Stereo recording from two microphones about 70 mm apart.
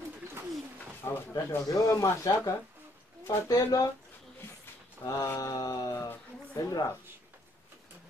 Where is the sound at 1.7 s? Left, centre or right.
Left.